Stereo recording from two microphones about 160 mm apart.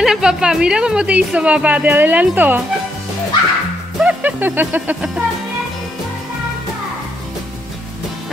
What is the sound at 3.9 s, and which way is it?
A woman's voice, 10° right (ahead or behind).